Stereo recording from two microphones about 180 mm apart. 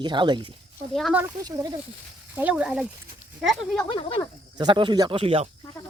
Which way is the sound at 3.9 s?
30° left (ahead or behind).